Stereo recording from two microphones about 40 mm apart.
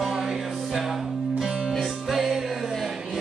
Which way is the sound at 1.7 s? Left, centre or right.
Centre.